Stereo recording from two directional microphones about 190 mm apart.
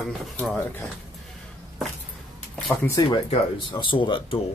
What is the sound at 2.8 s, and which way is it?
Speech, 20° left (ahead or behind).